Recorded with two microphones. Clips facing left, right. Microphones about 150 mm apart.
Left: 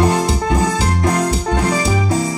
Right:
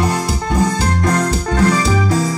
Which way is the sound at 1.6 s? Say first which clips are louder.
Right 6 dB; 25° left (ahead or behind).